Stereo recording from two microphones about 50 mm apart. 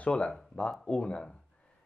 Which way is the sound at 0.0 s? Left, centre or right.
Left.